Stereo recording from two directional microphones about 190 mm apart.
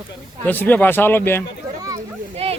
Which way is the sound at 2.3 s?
30° right (ahead or behind).